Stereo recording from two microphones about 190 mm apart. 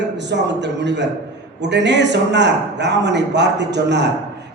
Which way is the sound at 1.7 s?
65° right (ahead or behind).